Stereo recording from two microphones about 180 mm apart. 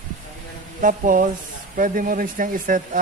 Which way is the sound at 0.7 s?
50° right (ahead or behind).